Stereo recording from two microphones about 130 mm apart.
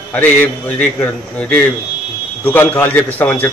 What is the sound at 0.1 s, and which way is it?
A man's voice, 15° left (ahead or behind).